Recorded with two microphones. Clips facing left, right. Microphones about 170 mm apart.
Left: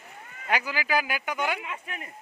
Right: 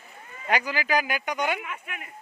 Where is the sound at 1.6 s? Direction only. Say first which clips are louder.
Even; 30° left (ahead or behind).